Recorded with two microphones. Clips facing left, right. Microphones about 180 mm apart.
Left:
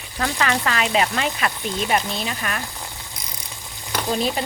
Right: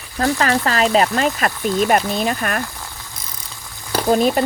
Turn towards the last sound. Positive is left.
turn(degrees=-50)  # may be behind; listen again after turning